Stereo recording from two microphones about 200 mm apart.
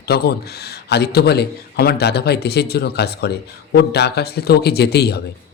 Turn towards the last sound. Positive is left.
turn(degrees=55)  # may be behind; listen again after turning